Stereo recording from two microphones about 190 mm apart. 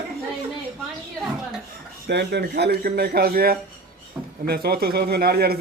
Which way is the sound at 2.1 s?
60° right (ahead or behind).